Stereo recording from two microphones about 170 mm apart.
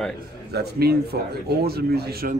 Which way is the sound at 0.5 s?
70° right (ahead or behind).